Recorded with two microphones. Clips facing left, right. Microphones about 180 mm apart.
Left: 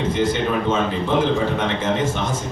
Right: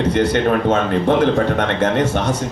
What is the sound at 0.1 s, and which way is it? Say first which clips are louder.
A man's voice: right 5 dB; 70° right (ahead or behind).